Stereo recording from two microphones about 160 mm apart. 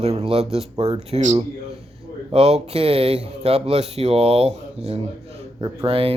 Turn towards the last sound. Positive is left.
turn(degrees=-35)  # may be behind; listen again after turning